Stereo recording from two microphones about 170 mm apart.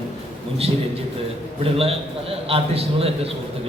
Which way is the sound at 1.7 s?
35° right (ahead or behind).